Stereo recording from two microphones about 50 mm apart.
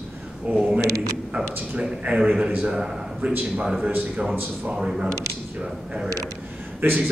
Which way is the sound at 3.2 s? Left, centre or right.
Right.